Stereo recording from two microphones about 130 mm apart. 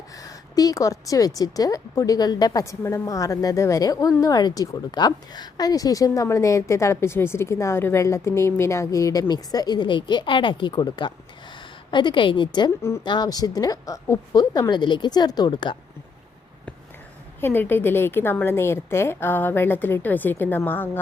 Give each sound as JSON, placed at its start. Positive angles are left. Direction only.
{"t": 0.2, "sound": "a woman's voice", "side_deg": 25}
{"t": 17.4, "sound": "a woman's voice", "side_deg": 15}